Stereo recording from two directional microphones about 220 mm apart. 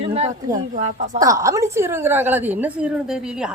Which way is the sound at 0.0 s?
25° right (ahead or behind).